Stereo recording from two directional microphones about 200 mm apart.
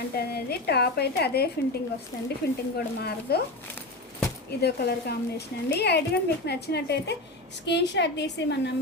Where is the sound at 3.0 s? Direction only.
50° left (ahead or behind).